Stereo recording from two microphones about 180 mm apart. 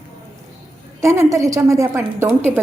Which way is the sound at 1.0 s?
15° right (ahead or behind).